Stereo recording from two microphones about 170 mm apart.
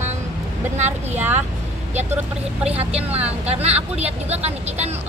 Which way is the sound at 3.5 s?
40° right (ahead or behind).